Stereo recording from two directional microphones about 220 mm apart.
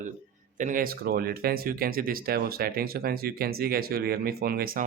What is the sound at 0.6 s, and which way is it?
Speech, 40° right (ahead or behind).